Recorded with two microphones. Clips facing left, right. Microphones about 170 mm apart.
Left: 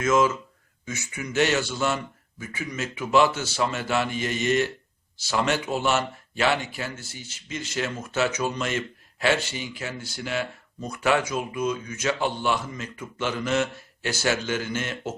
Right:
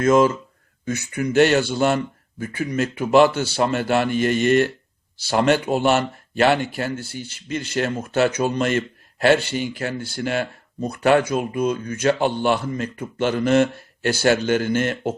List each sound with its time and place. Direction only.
0.0 s speech: 35° right (ahead or behind)
0.9 s speech: 60° right (ahead or behind)